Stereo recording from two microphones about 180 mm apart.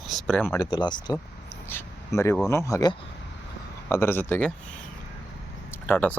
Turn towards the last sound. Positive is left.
turn(degrees=10)  # may be behind; listen again after turning